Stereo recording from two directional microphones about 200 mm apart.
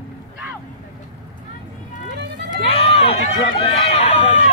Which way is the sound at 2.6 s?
30° left (ahead or behind).